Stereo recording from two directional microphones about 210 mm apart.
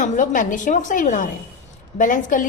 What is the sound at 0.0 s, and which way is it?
A woman's voice, 40° left (ahead or behind).